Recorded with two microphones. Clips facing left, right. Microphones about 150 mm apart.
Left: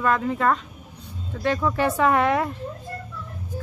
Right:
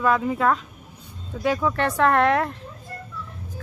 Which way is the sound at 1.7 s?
5° left (ahead or behind).